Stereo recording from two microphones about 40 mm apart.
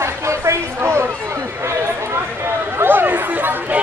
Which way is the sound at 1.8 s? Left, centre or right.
Right.